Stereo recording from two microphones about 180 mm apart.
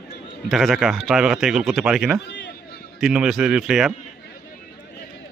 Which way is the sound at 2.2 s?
75° left (ahead or behind).